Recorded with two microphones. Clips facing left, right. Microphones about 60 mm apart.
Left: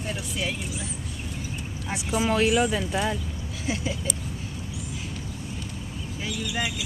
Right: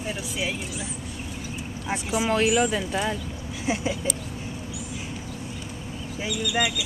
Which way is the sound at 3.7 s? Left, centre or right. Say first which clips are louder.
Right 3 dB; right.